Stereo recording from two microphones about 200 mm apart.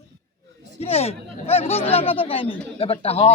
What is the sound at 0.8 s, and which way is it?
Speech, 30° left (ahead or behind).